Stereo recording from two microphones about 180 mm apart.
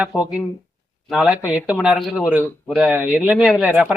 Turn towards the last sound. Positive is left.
turn(degrees=-5)  # may be behind; listen again after turning